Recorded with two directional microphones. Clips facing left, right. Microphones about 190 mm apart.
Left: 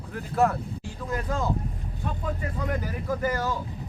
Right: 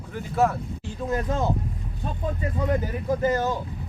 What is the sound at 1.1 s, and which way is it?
Speech, 25° right (ahead or behind).